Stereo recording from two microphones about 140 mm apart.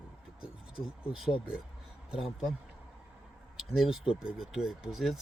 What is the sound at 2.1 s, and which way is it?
Speech, centre (ahead or behind).